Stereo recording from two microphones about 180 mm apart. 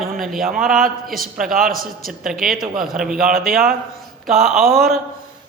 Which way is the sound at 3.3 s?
55° right (ahead or behind).